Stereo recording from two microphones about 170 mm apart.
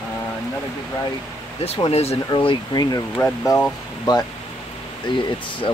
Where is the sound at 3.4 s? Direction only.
10° left (ahead or behind).